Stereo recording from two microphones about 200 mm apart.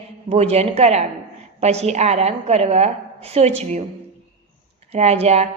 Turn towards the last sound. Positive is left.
turn(degrees=-30)  # may be behind; listen again after turning